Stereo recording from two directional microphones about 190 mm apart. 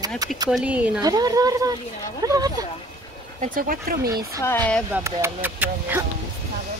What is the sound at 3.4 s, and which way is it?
Speech, 45° right (ahead or behind).